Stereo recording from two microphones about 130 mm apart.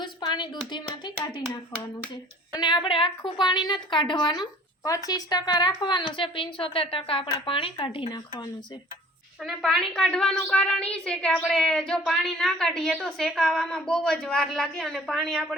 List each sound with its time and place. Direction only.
0.0 s a sound: 35° left (ahead or behind)
2.5 s a woman's voice: 35° left (ahead or behind)
9.4 s a woman's voice: centre (ahead or behind)